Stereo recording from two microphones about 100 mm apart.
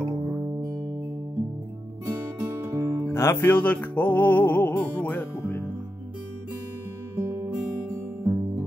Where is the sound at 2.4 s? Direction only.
35° right (ahead or behind).